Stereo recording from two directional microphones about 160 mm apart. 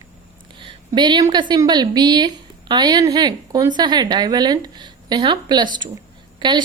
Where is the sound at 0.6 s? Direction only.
30° right (ahead or behind).